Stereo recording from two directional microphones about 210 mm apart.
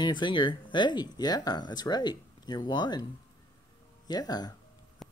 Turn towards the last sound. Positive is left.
turn(degrees=0)  # may be behind; listen again after turning